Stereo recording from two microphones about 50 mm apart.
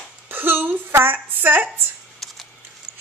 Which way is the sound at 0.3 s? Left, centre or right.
Right.